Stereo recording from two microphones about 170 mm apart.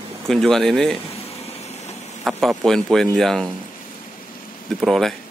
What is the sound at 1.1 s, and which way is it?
Vehicle, 40° left (ahead or behind).